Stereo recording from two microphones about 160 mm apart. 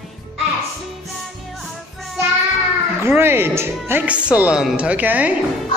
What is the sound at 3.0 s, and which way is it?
A man's voice, 15° right (ahead or behind).